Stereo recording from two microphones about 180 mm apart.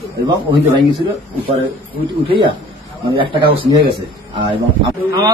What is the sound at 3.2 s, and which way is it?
Speech, 30° right (ahead or behind).